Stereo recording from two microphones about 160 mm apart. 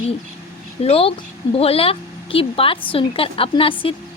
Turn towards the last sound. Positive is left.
turn(degrees=35)  # may be behind; listen again after turning